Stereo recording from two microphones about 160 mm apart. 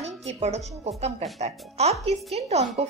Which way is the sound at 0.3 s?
40° right (ahead or behind).